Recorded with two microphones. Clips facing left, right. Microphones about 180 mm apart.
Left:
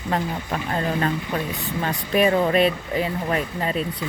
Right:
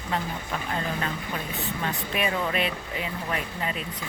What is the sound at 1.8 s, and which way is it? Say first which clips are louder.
Speech: left 10 dB; 35° left (ahead or behind).